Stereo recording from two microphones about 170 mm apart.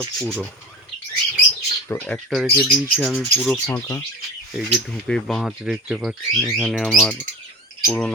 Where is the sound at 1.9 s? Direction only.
5° left (ahead or behind).